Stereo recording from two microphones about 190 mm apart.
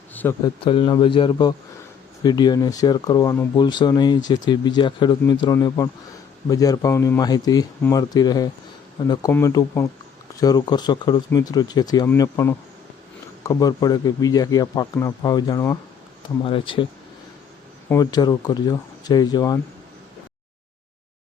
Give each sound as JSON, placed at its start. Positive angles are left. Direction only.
{"t": 0.1, "sound": "a sound", "side_deg": 10}
{"t": 0.4, "sound": "speech", "side_deg": 30}
{"t": 17.8, "sound": "speech", "side_deg": 20}